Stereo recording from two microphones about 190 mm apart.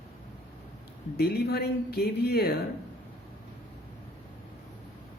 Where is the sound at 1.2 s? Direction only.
55° left (ahead or behind).